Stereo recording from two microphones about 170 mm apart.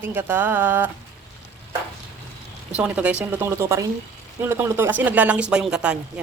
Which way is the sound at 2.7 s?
10° right (ahead or behind).